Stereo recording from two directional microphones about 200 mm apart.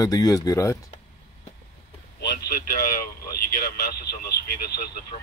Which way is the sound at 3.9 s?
50° left (ahead or behind).